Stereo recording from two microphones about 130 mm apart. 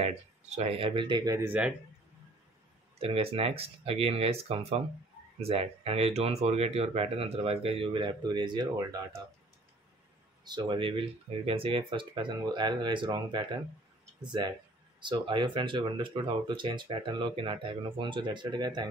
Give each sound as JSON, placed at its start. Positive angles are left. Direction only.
{"t": 0.0, "sound": "speech", "side_deg": -55}
{"t": 1.4, "sound": "speech", "side_deg": -10}
{"t": 3.0, "sound": "speech", "side_deg": -45}
{"t": 10.4, "sound": "speech", "side_deg": -35}